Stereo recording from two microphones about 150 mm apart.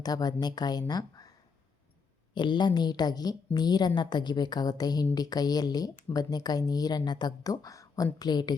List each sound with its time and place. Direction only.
0.0 s a woman's voice: 25° left (ahead or behind)
2.3 s a woman's voice: 30° left (ahead or behind)